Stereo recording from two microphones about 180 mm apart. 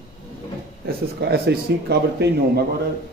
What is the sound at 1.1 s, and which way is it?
A man's voice, 65° right (ahead or behind).